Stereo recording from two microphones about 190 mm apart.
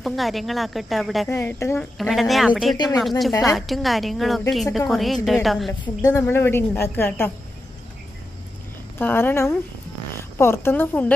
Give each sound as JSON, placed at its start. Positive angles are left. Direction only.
{"t": 0.0, "sound": "a woman's voice", "side_deg": 0}
{"t": 1.3, "sound": "a woman's voice", "side_deg": 10}
{"t": 2.0, "sound": "a woman's voice", "side_deg": 0}
{"t": 2.7, "sound": "speech", "side_deg": 20}
{"t": 3.0, "sound": "a woman's voice", "side_deg": 0}
{"t": 5.7, "sound": "a woman's voice", "side_deg": 10}
{"t": 8.9, "sound": "a woman's voice", "side_deg": 10}